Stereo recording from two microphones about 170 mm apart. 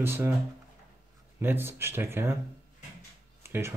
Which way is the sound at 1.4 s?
10° right (ahead or behind).